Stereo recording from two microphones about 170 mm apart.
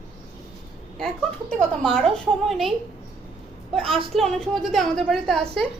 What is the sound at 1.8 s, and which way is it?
Speech, centre (ahead or behind).